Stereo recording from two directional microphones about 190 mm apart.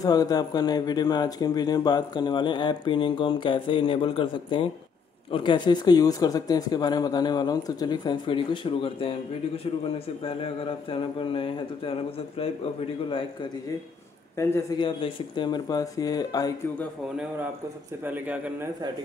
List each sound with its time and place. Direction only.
0.0 s speech: 20° left (ahead or behind)
14.3 s a man's voice: 15° left (ahead or behind)
14.8 s speech: 25° left (ahead or behind)
18.0 s speech: 10° right (ahead or behind)